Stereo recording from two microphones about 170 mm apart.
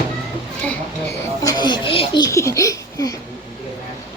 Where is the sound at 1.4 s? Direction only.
25° left (ahead or behind).